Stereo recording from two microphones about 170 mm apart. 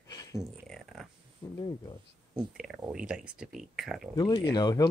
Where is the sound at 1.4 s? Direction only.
20° left (ahead or behind).